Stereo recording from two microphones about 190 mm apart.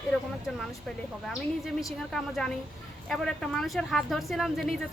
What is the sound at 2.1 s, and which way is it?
A woman's voice, 5° left (ahead or behind).